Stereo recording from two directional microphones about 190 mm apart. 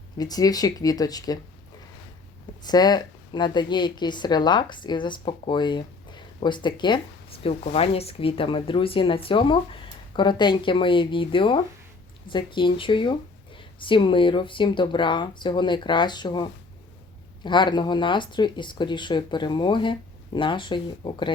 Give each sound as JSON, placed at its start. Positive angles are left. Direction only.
{"t": 0.2, "sound": "speech", "side_deg": 20}
{"t": 2.6, "sound": "speech", "side_deg": 20}